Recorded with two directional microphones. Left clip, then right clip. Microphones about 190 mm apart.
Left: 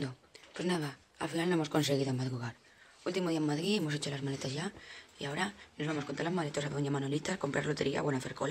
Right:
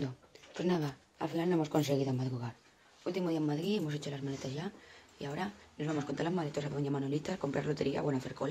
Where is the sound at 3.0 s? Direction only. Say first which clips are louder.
Left 1 dB; 10° left (ahead or behind).